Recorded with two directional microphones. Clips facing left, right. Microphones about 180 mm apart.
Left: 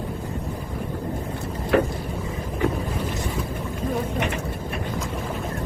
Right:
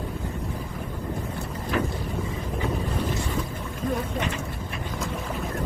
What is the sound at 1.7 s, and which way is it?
Boat, 60° left (ahead or behind).